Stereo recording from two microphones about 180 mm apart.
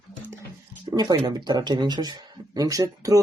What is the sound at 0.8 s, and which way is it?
Speech, 20° right (ahead or behind).